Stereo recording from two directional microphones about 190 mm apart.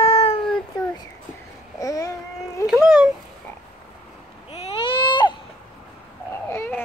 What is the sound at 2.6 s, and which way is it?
Speech, 5° right (ahead or behind).